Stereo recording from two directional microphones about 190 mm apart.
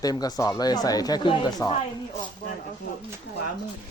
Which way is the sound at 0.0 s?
20° left (ahead or behind).